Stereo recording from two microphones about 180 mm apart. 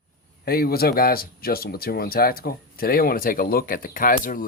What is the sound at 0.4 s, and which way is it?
Speech, 60° left (ahead or behind).